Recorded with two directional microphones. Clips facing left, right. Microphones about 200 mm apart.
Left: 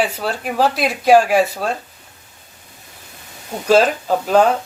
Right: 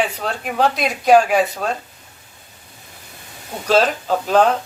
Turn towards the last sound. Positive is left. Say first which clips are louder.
# left 1 dB
turn(degrees=10)  # may be behind; listen again after turning